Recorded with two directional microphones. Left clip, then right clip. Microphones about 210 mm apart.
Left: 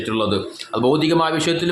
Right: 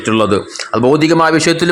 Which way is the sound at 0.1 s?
30° right (ahead or behind).